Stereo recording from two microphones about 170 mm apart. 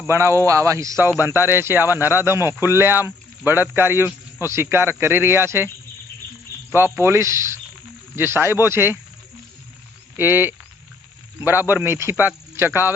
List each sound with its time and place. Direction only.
0.1 s speech: 15° right (ahead or behind)
6.7 s speech: 15° right (ahead or behind)
10.2 s speech: 10° right (ahead or behind)
11.7 s speech: 15° right (ahead or behind)